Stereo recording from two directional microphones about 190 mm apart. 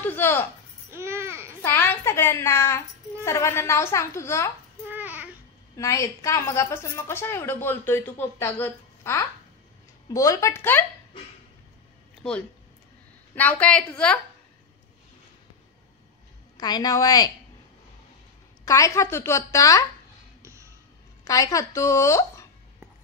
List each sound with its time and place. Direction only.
0.0 s a woman's voice: 10° left (ahead or behind)
0.9 s babbling: 15° right (ahead or behind)
1.6 s a woman's voice: 10° left (ahead or behind)
4.8 s babbling: 10° right (ahead or behind)
5.8 s a woman's voice: 15° left (ahead or behind)
12.2 s a woman's voice: 5° left (ahead or behind)
16.5 s a woman's voice: 20° left (ahead or behind)
18.7 s a woman's voice: 15° left (ahead or behind)
20.4 s music: 15° right (ahead or behind)
21.2 s a woman's voice: 20° left (ahead or behind)